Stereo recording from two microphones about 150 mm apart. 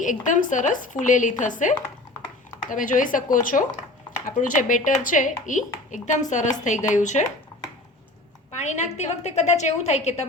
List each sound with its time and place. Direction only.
0.0 s speech: 60° left (ahead or behind)
8.5 s a woman's voice: 50° left (ahead or behind)